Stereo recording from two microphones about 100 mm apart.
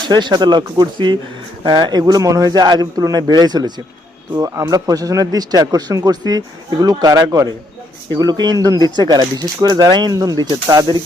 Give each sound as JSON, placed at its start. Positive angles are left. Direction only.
{"t": 0.1, "sound": "speech", "side_deg": -45}